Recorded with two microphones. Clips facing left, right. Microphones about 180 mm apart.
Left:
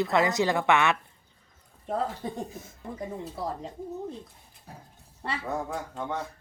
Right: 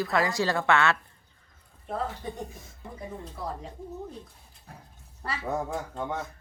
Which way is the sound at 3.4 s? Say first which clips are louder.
Left 2 dB; 35° left (ahead or behind).